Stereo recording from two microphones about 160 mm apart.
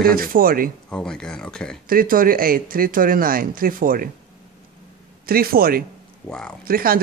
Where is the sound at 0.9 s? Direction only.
5° left (ahead or behind).